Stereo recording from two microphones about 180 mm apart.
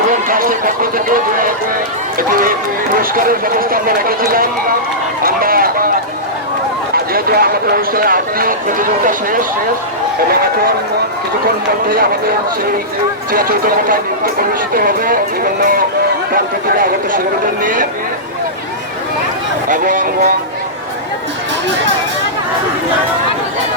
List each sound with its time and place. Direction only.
0.1 s speech: 50° right (ahead or behind)
5.2 s run: 55° right (ahead or behind)
6.9 s speech: 55° right (ahead or behind)
11.4 s speech: 55° right (ahead or behind)
13.3 s speech: 55° right (ahead or behind)
16.3 s speech: 50° right (ahead or behind)
19.6 s speech: 45° right (ahead or behind)